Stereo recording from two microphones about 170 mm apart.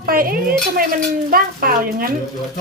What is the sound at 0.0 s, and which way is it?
Dishes, 60° right (ahead or behind).